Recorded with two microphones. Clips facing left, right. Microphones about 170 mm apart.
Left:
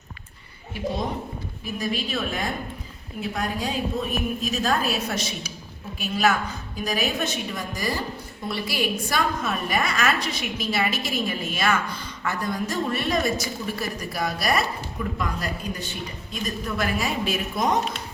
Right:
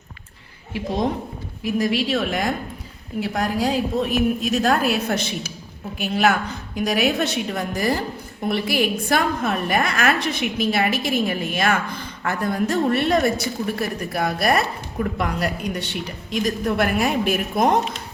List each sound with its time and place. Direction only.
1.6 s a woman's voice: 90° right; by 6.3 s 60° right (ahead or behind)
6.7 s a woman's voice: 70° right (ahead or behind); by 17.7 s 55° right (ahead or behind)